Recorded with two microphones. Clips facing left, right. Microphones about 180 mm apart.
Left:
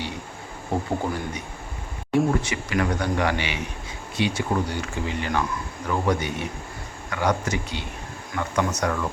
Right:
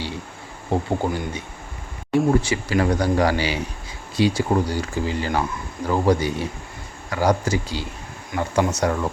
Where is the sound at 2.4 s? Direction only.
30° right (ahead or behind).